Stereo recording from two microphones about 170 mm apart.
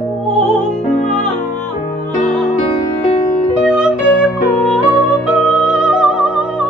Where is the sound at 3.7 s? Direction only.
5° right (ahead or behind).